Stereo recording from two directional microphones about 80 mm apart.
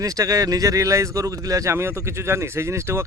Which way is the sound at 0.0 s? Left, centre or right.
Right.